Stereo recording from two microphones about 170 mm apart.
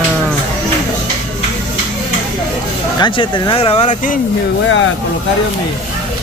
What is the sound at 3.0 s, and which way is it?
Speech, 30° left (ahead or behind).